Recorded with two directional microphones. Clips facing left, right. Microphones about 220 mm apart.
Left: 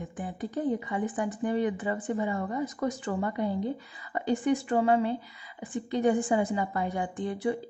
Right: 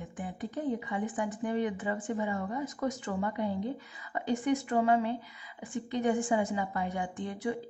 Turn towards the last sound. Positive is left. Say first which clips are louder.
# left 4 dB
turn(degrees=35)  # may be behind; listen again after turning